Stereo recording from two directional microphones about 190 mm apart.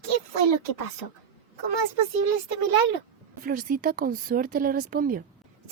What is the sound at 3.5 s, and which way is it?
A woman's voice, 50° right (ahead or behind).